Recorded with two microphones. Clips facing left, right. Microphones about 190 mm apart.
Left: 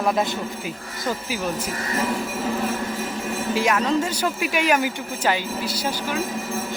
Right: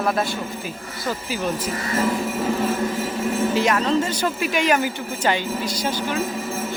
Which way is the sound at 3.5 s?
10° left (ahead or behind).